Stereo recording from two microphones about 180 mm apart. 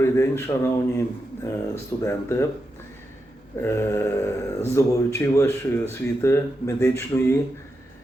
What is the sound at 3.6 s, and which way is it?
Speech, 15° left (ahead or behind).